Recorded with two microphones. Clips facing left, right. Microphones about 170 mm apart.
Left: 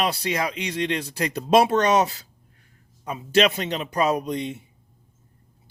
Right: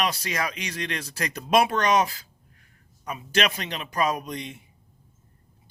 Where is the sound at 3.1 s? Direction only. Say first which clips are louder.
Left 6 dB; 25° left (ahead or behind).